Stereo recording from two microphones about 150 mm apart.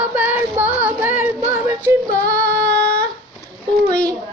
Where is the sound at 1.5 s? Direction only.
20° right (ahead or behind).